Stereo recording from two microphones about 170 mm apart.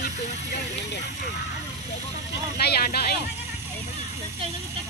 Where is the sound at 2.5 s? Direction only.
70° left (ahead or behind).